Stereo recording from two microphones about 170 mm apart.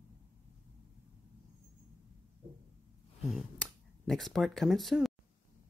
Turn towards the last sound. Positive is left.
turn(degrees=0)  # may be behind; listen again after turning